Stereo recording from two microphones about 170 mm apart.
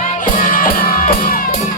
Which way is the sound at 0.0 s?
50° left (ahead or behind).